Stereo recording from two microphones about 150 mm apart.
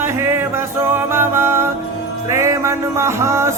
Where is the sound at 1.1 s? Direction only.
15° right (ahead or behind).